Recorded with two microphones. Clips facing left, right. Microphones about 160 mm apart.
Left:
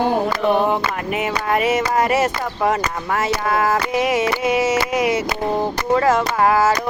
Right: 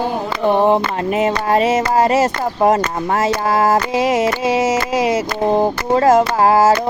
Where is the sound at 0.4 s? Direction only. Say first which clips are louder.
Right 7 dB; 30° right (ahead or behind).